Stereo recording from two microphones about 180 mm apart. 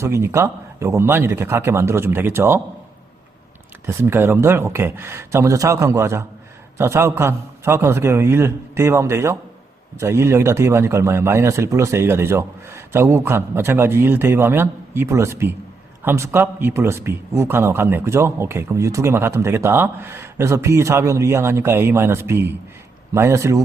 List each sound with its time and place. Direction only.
0.0 s a man's voice: 15° right (ahead or behind)
3.8 s a man's voice: 15° right (ahead or behind)